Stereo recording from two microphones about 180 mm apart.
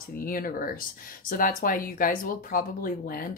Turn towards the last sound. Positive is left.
turn(degrees=55)  # may be behind; listen again after turning